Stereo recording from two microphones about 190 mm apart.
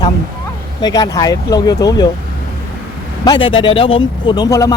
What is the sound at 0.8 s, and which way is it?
Speech, 20° left (ahead or behind).